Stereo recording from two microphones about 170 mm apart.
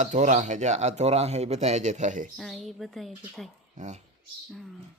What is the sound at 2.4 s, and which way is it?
A woman's voice, centre (ahead or behind).